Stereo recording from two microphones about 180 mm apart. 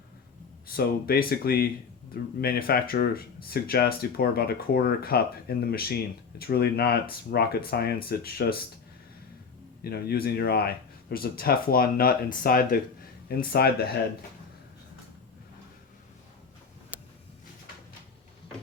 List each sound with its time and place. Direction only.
0.7 s speech: 55° left (ahead or behind)
9.8 s speech: 60° left (ahead or behind)